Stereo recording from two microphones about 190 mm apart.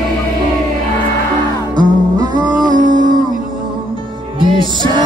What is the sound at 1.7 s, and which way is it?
Music, 20° right (ahead or behind).